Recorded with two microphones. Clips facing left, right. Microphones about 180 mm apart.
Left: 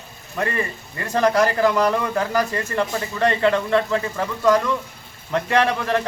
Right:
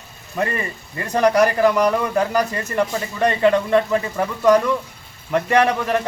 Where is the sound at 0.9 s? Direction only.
15° right (ahead or behind).